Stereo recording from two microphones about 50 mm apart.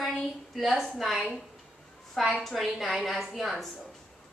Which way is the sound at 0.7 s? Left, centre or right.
Centre.